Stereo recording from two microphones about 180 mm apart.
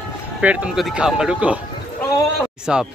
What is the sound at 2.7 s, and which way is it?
Speech, 5° right (ahead or behind).